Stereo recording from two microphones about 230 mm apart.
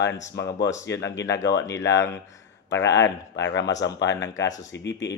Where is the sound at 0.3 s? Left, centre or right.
Left.